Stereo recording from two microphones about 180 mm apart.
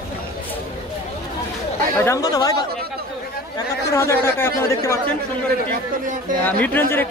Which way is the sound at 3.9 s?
15° left (ahead or behind).